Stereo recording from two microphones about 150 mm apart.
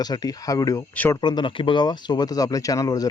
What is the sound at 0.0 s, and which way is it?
Speech, 25° left (ahead or behind).